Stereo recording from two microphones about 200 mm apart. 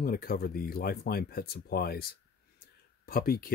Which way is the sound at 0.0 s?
45° left (ahead or behind).